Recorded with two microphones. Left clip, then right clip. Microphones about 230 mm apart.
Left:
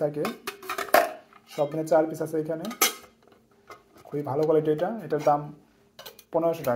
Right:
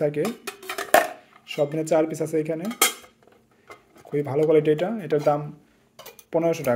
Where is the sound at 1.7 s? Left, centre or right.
Right.